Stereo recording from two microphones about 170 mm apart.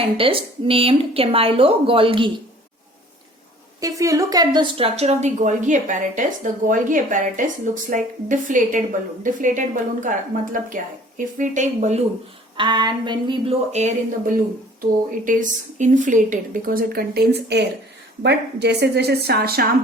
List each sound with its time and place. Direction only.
0.2 s a woman's voice: 30° right (ahead or behind)
3.8 s a woman's voice: 20° right (ahead or behind); by 11.9 s 45° right (ahead or behind)
12.5 s a sound: 25° right (ahead or behind)
13.7 s a woman's voice: 40° right (ahead or behind); by 19.6 s 65° right (ahead or behind)